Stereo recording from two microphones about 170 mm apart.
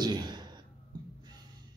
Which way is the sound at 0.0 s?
25° right (ahead or behind).